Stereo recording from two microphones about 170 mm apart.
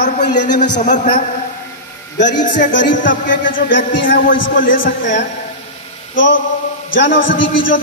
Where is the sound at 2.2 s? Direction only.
50° left (ahead or behind).